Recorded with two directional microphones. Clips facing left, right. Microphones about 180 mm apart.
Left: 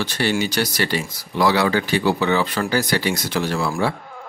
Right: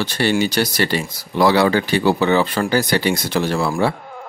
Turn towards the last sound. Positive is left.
turn(degrees=-25)  # may be behind; listen again after turning